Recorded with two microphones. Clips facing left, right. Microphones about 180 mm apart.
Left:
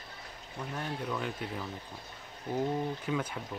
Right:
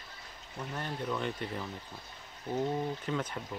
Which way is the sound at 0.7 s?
5° left (ahead or behind).